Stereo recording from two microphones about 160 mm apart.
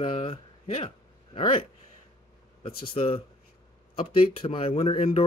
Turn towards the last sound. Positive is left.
turn(degrees=35)  # may be behind; listen again after turning